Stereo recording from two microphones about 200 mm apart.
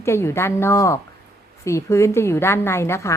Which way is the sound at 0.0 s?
15° left (ahead or behind).